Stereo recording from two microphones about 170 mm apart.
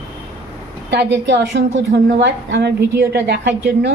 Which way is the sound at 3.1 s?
75° right (ahead or behind).